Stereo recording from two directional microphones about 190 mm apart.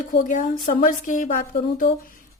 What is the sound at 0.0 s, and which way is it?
A woman's voice, 45° left (ahead or behind).